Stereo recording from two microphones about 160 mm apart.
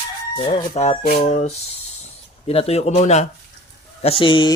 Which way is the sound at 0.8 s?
45° left (ahead or behind).